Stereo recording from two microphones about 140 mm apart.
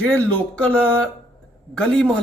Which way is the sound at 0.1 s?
15° left (ahead or behind).